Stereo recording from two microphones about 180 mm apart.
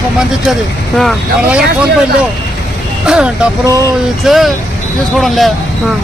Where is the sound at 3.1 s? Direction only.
5° right (ahead or behind).